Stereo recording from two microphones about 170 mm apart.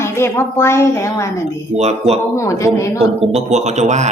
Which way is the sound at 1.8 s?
40° right (ahead or behind).